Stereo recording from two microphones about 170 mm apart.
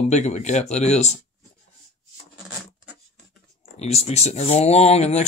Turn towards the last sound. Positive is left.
turn(degrees=40)  # may be behind; listen again after turning